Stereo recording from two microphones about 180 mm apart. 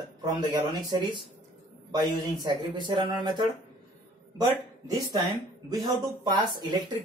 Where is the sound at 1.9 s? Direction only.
25° right (ahead or behind).